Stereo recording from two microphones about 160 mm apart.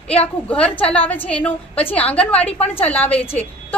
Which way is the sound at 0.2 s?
10° left (ahead or behind).